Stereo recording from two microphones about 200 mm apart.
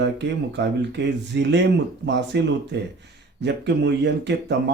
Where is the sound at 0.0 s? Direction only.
60° right (ahead or behind).